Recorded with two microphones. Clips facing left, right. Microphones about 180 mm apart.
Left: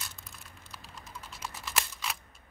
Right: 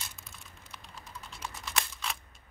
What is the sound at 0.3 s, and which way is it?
Computer keyboard, centre (ahead or behind).